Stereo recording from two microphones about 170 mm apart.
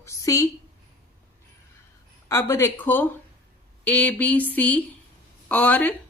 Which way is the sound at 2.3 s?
15° left (ahead or behind).